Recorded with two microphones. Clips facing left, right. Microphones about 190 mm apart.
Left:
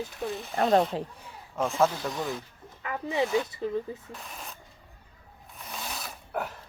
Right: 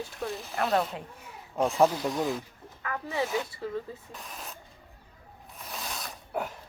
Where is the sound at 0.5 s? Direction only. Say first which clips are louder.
Left 5 dB; 35° left (ahead or behind).